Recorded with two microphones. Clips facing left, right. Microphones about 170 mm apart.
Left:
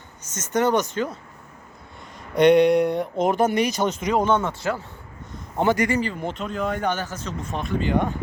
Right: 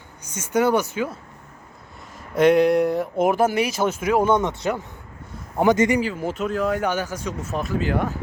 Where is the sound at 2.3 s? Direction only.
Centre (ahead or behind); by 6.0 s 15° right (ahead or behind).